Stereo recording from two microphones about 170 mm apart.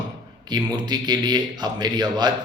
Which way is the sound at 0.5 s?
25° right (ahead or behind).